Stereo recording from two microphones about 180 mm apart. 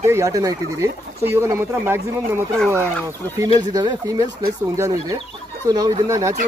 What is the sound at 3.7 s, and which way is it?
Speech, 20° right (ahead or behind).